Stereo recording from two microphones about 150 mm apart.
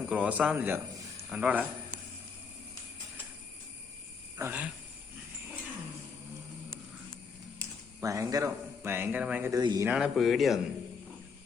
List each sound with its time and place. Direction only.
0.0 s a man's voice: 10° right (ahead or behind)
4.4 s speech: 15° right (ahead or behind)
7.6 s speech: 20° right (ahead or behind)
9.5 s speech: 25° right (ahead or behind)
9.8 s speech: 5° right (ahead or behind)